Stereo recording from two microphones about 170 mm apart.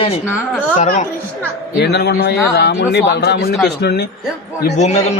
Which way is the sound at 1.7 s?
75° left (ahead or behind).